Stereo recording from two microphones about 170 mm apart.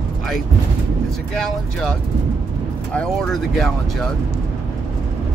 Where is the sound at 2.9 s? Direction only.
Centre (ahead or behind).